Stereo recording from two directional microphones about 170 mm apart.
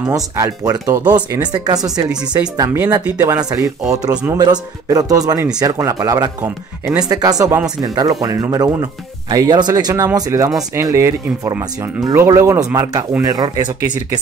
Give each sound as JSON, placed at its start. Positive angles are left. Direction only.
{"t": 0.1, "sound": "speech", "side_deg": -20}